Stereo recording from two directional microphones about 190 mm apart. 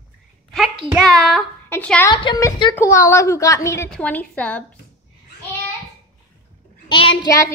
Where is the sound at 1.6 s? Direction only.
10° left (ahead or behind).